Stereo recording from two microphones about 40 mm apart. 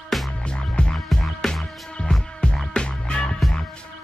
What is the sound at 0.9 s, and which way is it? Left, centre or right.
Music, centre.